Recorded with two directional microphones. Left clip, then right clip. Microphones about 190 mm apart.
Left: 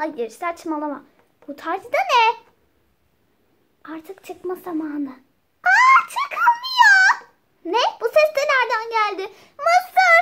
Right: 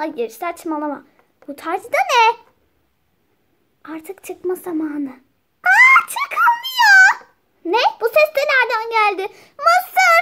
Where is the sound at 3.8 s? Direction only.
40° right (ahead or behind).